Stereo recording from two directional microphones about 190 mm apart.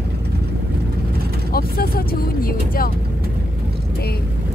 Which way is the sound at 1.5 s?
50° left (ahead or behind).